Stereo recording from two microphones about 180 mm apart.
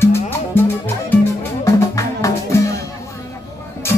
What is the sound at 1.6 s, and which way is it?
Music, 15° left (ahead or behind).